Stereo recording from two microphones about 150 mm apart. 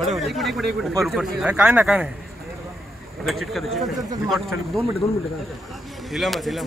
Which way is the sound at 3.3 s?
Centre (ahead or behind).